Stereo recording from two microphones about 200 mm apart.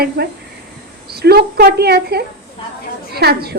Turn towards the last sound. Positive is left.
turn(degrees=-50)  # may be behind; listen again after turning